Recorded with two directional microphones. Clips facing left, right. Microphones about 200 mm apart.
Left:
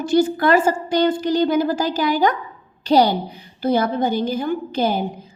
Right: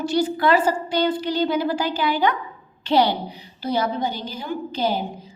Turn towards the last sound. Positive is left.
turn(degrees=55)  # may be behind; listen again after turning